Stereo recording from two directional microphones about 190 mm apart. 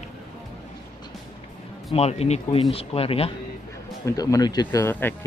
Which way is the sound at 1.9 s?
35° left (ahead or behind).